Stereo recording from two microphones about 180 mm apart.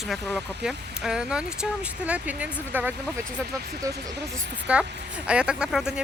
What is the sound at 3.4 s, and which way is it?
Speech, 60° right (ahead or behind).